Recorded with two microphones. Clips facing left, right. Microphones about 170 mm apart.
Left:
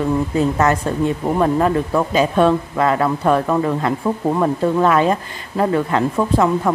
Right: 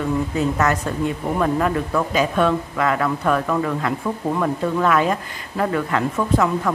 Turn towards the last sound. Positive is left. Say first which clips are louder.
# left 3 dB
turn(degrees=30)  # may be behind; listen again after turning